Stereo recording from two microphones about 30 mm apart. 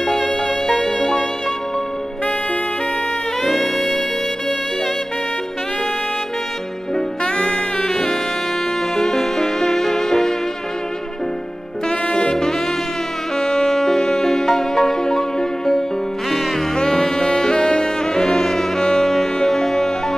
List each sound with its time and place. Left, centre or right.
3.4 s music: centre
7.2 s music: left
7.9 s music: centre
12.1 s saxophone: left
13.4 s music: left